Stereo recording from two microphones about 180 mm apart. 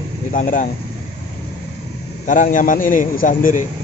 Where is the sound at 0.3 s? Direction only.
45° left (ahead or behind).